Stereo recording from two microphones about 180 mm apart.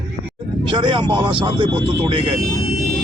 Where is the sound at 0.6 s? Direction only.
25° right (ahead or behind).